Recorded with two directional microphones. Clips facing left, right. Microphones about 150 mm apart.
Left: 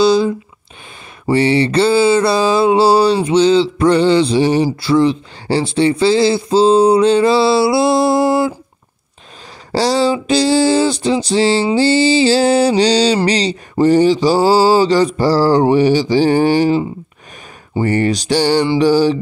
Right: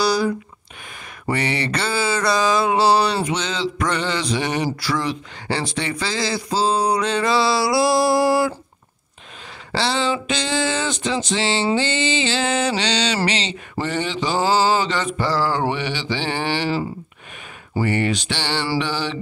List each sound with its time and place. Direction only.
0.0 s a sound: 20° left (ahead or behind)
1.3 s speech: 30° left (ahead or behind)
3.3 s mantra: 30° left (ahead or behind)
4.7 s speech: 30° left (ahead or behind)
9.7 s a sound: 40° left (ahead or behind)
10.1 s mantra: 35° left (ahead or behind)
17.8 s mantra: 40° left (ahead or behind)